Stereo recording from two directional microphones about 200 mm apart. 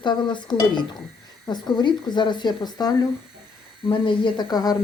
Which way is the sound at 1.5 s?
20° left (ahead or behind).